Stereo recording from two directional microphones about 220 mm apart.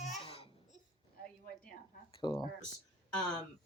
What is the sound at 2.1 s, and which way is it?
Speech, 25° left (ahead or behind).